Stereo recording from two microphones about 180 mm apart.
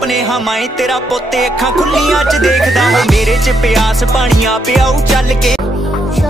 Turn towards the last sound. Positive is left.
turn(degrees=0)  # may be behind; listen again after turning